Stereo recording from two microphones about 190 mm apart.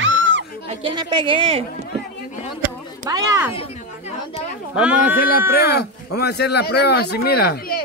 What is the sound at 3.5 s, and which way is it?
Chatter, 30° left (ahead or behind).